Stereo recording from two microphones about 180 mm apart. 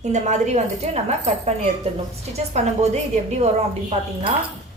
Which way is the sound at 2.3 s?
40° right (ahead or behind).